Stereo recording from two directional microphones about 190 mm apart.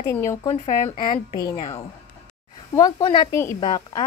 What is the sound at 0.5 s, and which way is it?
A woman's voice, 30° left (ahead or behind).